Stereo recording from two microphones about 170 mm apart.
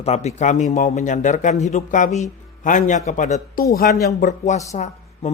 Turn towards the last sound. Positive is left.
turn(degrees=40)  # may be behind; listen again after turning